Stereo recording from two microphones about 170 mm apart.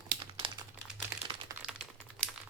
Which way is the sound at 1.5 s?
25° right (ahead or behind).